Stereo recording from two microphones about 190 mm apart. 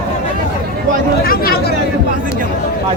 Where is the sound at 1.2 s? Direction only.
50° left (ahead or behind).